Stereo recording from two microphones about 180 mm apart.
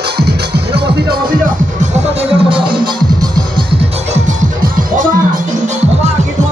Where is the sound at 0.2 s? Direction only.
65° right (ahead or behind).